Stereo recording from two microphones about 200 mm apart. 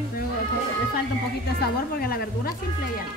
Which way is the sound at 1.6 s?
50° left (ahead or behind).